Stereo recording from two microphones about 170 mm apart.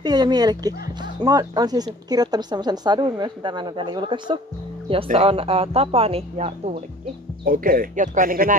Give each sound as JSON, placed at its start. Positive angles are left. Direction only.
{"t": 0.0, "sound": "speech", "side_deg": -25}
{"t": 7.4, "sound": "speech", "side_deg": -55}